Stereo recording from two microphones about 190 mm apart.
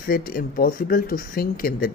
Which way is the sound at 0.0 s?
50° left (ahead or behind).